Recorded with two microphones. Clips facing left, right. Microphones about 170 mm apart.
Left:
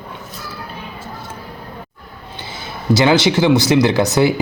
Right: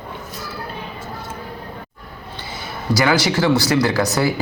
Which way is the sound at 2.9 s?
25° left (ahead or behind).